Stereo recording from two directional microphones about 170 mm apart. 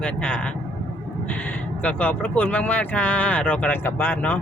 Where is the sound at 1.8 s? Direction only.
10° left (ahead or behind).